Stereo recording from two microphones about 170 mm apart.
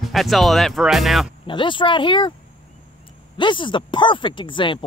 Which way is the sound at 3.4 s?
30° left (ahead or behind).